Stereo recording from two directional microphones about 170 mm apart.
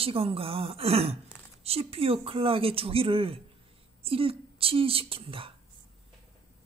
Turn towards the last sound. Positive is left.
turn(degrees=-30)  # may be behind; listen again after turning